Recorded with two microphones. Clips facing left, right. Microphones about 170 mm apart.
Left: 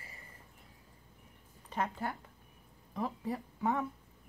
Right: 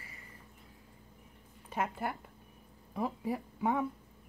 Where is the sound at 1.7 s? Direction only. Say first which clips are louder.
Right 1 dB; 10° right (ahead or behind).